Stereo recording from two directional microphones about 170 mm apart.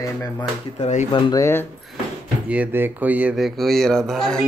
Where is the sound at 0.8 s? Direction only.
45° left (ahead or behind).